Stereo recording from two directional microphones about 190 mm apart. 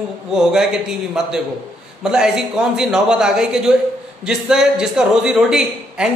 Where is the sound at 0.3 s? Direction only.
Centre (ahead or behind).